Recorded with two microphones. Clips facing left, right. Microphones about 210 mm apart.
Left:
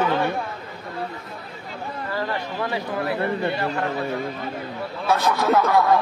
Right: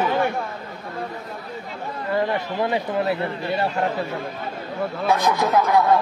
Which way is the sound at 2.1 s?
20° right (ahead or behind).